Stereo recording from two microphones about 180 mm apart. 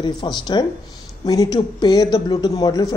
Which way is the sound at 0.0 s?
25° left (ahead or behind).